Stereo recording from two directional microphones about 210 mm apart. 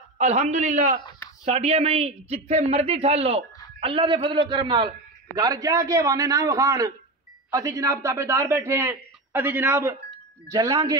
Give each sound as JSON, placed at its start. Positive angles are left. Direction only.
{"t": 0.2, "sound": "a man's voice", "side_deg": -35}